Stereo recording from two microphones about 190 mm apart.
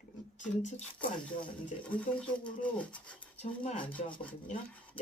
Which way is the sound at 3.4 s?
35° left (ahead or behind).